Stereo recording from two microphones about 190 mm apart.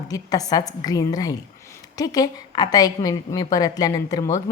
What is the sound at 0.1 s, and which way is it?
A woman's voice, 20° left (ahead or behind).